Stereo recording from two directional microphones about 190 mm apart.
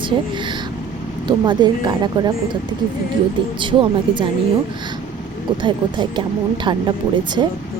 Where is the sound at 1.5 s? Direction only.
25° right (ahead or behind).